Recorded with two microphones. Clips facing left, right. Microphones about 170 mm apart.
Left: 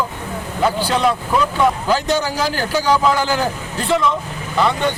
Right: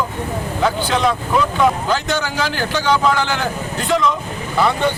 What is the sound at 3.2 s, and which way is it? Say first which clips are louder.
Speech: left 2 dB; 35° left (ahead or behind).